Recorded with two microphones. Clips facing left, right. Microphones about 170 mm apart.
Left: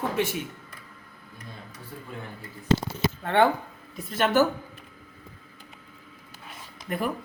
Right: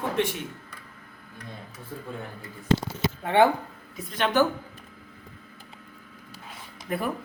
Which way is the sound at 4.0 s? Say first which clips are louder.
Left 2 dB; 5° left (ahead or behind).